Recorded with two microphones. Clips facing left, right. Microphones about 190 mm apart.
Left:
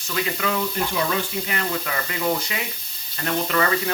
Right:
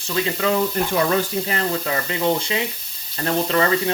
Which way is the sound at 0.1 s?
30° right (ahead or behind).